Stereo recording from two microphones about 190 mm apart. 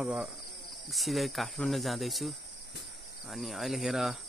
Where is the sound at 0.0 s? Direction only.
Centre (ahead or behind).